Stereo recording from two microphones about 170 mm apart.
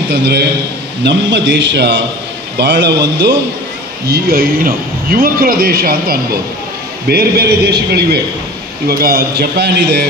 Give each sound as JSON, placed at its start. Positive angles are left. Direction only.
{"t": 0.1, "sound": "a man's voice", "side_deg": -80}
{"t": 1.0, "sound": "a man's voice", "side_deg": -90}
{"t": 4.1, "sound": "a man's voice", "side_deg": -60}
{"t": 8.8, "sound": "a man's voice", "side_deg": -60}